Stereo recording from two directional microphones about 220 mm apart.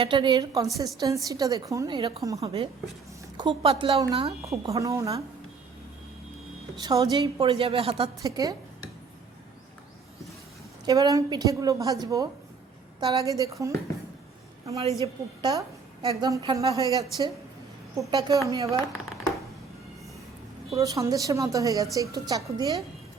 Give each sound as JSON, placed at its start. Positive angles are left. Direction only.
{"t": 0.0, "sound": "a woman's voice", "side_deg": -20}
{"t": 4.7, "sound": "a woman's voice", "side_deg": -15}
{"t": 6.7, "sound": "a woman's voice", "side_deg": -15}
{"t": 10.8, "sound": "a woman's voice", "side_deg": -15}
{"t": 13.3, "sound": "a woman's voice", "side_deg": -15}
{"t": 14.8, "sound": "a woman's voice", "side_deg": 15}
{"t": 15.4, "sound": "a woman's voice", "side_deg": -20}
{"t": 20.7, "sound": "a woman's voice", "side_deg": -15}